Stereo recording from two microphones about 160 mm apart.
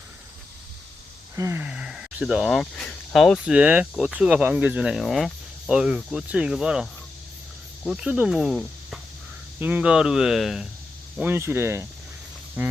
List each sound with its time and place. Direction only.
1.4 s speech: 15° right (ahead or behind)
7.9 s speech: 5° right (ahead or behind)
11.2 s speech: 15° right (ahead or behind)